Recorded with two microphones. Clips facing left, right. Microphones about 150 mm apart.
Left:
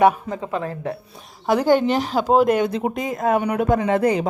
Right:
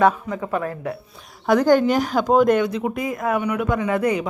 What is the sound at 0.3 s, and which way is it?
Speech, 30° left (ahead or behind).